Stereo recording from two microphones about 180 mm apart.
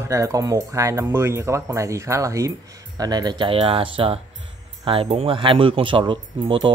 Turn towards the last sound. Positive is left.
turn(degrees=-25)  # may be behind; listen again after turning